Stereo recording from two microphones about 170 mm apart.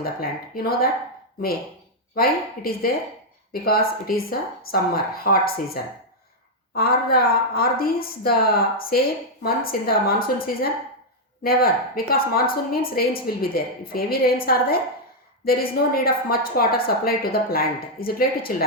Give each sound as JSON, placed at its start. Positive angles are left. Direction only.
{"t": 0.0, "sound": "a woman's voice", "side_deg": 60}
{"t": 2.1, "sound": "a woman's voice", "side_deg": 60}